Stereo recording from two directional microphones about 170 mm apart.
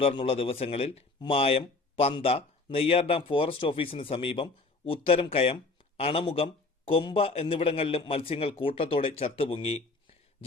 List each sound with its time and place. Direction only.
0.2 s speech: 35° left (ahead or behind)